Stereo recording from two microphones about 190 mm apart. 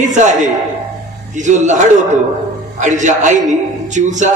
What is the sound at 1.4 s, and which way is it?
Speech, 40° right (ahead or behind).